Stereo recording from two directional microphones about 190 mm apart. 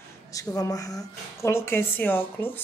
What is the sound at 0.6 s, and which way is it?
Speech, 20° left (ahead or behind).